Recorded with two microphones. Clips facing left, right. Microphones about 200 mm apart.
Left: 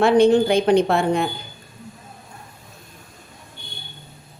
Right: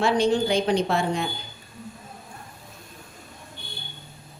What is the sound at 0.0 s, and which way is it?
A woman's voice, 55° left (ahead or behind).